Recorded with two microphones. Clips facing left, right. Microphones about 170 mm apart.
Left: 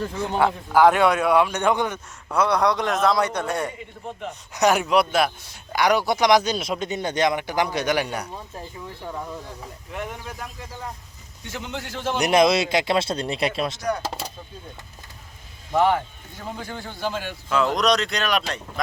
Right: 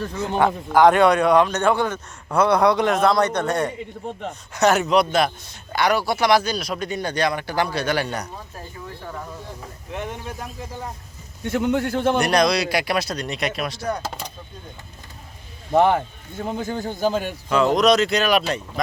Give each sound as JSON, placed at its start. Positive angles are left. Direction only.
{"t": 0.0, "sound": "speech", "side_deg": 10}
{"t": 2.3, "sound": "a man's voice", "side_deg": 0}
{"t": 9.9, "sound": "speech", "side_deg": -25}
{"t": 11.4, "sound": "a man's voice", "side_deg": -55}
{"t": 12.2, "sound": "speech", "side_deg": 20}
{"t": 15.7, "sound": "a man's voice", "side_deg": -50}
{"t": 17.7, "sound": "a man's voice", "side_deg": -5}